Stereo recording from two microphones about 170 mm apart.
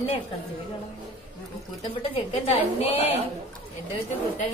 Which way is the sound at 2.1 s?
35° left (ahead or behind).